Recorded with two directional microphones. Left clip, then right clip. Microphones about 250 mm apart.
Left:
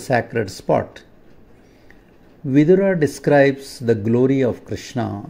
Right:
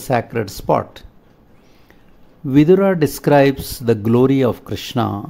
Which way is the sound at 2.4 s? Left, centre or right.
Centre.